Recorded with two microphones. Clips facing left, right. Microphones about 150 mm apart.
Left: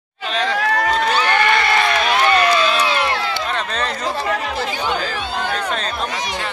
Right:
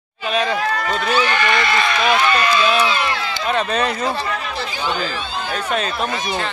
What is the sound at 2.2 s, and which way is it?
Run, 65° left (ahead or behind).